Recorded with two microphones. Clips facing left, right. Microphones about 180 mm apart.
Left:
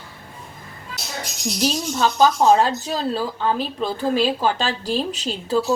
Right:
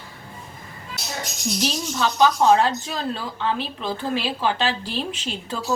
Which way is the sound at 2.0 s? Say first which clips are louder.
Left 1 dB; 40° left (ahead or behind).